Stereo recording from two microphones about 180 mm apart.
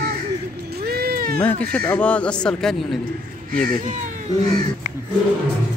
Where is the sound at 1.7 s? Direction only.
10° left (ahead or behind).